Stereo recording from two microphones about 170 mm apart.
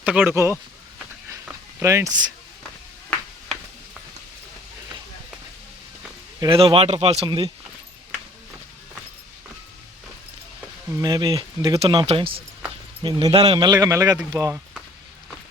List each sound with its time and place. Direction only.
0.0 s speech: 10° right (ahead or behind)
1.8 s speech: 20° right (ahead or behind)
6.4 s speech: 30° right (ahead or behind)
7.3 s speech: 25° right (ahead or behind)
10.9 s speech: 20° right (ahead or behind)